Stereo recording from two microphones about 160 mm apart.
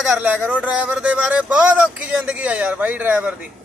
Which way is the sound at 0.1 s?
10° right (ahead or behind).